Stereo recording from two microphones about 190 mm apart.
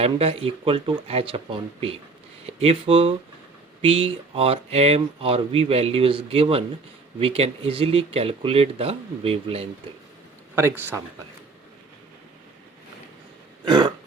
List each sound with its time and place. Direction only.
0.0 s speech: 30° right (ahead or behind)
10.5 s speech: 10° right (ahead or behind)
13.7 s speech: 20° right (ahead or behind)